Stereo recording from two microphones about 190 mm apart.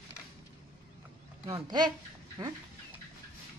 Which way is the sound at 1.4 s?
20° right (ahead or behind).